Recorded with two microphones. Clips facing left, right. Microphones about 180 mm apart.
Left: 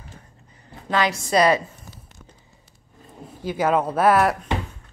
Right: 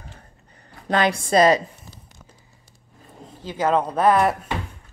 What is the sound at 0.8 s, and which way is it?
Speech, 50° right (ahead or behind).